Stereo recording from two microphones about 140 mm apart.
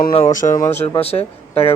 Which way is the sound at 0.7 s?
45° left (ahead or behind).